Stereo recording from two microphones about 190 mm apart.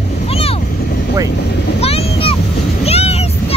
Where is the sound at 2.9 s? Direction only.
35° left (ahead or behind).